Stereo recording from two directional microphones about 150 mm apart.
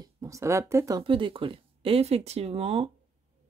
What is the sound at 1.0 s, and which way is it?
Speech, 35° right (ahead or behind).